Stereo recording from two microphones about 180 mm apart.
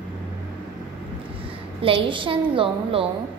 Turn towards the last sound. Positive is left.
turn(degrees=-30)  # may be behind; listen again after turning